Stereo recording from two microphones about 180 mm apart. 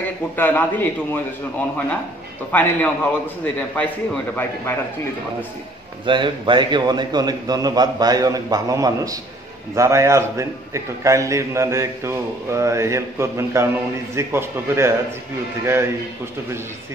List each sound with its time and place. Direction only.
0.4 s a man's voice: 10° left (ahead or behind)
2.5 s a man's voice: 10° left (ahead or behind)
6.0 s a man's voice: 25° right (ahead or behind)